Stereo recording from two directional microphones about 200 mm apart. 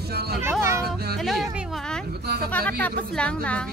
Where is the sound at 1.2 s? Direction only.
Centre (ahead or behind).